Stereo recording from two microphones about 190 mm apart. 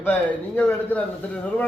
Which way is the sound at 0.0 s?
10° left (ahead or behind).